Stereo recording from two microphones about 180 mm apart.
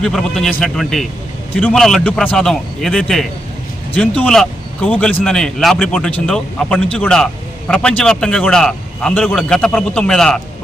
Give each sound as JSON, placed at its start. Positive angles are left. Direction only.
{"t": 0.0, "sound": "a man's voice", "side_deg": 0}